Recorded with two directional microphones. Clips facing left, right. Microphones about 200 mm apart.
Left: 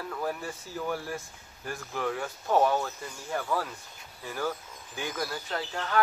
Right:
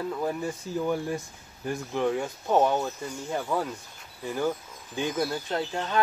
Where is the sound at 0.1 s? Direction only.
15° right (ahead or behind).